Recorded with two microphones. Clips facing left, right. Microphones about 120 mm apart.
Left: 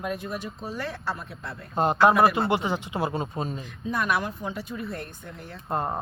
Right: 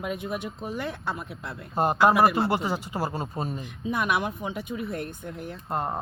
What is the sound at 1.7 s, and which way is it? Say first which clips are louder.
A woman's voice: left 1 dB; 5° right (ahead or behind).